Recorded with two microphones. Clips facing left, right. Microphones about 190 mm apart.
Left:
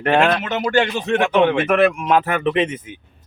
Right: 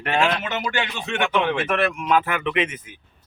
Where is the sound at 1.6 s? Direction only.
50° left (ahead or behind); by 2.8 s 30° left (ahead or behind).